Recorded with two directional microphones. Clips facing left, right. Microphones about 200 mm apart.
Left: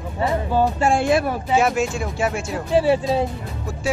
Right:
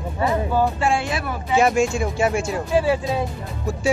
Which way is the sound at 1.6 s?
Centre (ahead or behind).